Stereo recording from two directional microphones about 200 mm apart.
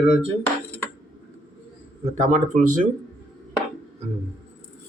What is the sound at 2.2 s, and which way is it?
Speech, 40° right (ahead or behind).